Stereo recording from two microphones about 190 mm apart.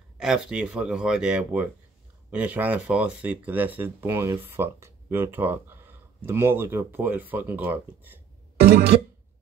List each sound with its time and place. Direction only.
0.2 s speech: 5° right (ahead or behind)
8.5 s music: 55° right (ahead or behind)